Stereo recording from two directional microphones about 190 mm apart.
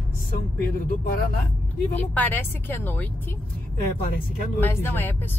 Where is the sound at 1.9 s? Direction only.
10° left (ahead or behind).